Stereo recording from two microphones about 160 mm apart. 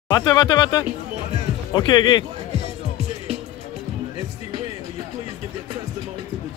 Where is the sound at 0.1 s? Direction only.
25° left (ahead or behind).